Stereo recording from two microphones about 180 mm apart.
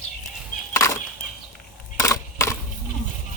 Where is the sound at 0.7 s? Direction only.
15° left (ahead or behind).